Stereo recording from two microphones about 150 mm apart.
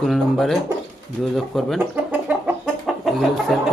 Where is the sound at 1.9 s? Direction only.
10° right (ahead or behind).